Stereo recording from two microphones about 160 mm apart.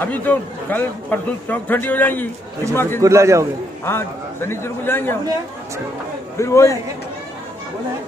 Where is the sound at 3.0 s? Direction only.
20° right (ahead or behind).